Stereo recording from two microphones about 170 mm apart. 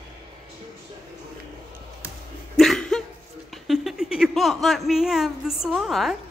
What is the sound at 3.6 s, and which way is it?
Speech, centre (ahead or behind).